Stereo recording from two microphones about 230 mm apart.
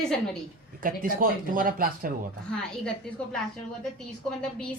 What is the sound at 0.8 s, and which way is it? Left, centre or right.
Speech, right.